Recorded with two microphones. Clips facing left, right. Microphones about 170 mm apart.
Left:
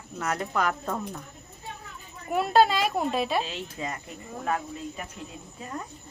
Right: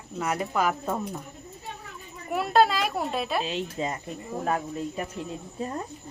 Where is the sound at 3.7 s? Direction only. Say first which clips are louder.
Right 4 dB; 25° right (ahead or behind).